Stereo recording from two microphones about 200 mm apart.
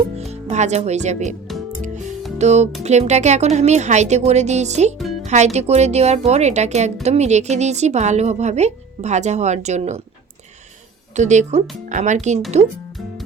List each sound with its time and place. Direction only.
0.2 s speech: 35° right (ahead or behind)
1.8 s music: 35° right (ahead or behind)
2.4 s speech: 35° right (ahead or behind)
11.1 s speech: 35° right (ahead or behind)